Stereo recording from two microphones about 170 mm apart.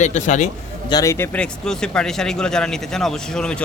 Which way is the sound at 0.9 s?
20° left (ahead or behind).